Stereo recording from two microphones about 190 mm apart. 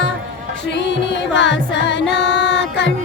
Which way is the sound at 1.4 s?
70° left (ahead or behind).